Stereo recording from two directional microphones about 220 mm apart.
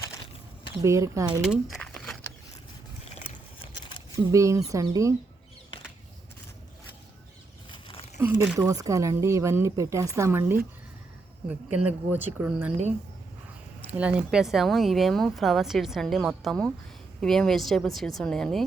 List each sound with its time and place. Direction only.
0.8 s speech: 15° right (ahead or behind)
1.4 s speech: centre (ahead or behind)
4.1 s speech: 15° right (ahead or behind)
7.7 s a sound: 25° left (ahead or behind)
8.2 s speech: 10° right (ahead or behind)
12.1 s speech: 10° right (ahead or behind)
14.0 s a woman's voice: 5° right (ahead or behind)